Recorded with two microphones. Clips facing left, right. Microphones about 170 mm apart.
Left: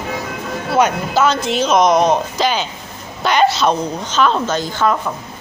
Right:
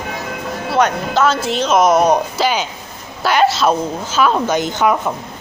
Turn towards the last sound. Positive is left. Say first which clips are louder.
# right 2 dB
turn(degrees=-20)  # may be behind; listen again after turning